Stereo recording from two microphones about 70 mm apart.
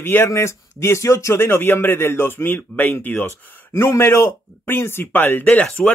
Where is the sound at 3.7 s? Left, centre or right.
Left.